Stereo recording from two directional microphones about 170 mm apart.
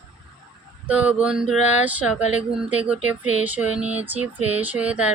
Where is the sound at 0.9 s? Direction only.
10° right (ahead or behind).